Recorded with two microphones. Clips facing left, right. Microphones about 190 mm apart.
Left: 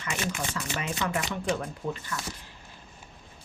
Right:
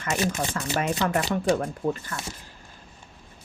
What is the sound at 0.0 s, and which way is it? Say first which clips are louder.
Speech: right 6 dB; 45° right (ahead or behind).